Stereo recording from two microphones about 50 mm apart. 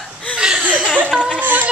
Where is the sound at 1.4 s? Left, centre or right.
Right.